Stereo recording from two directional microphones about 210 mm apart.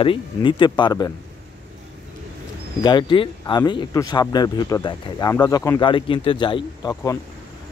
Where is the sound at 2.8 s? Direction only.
20° left (ahead or behind).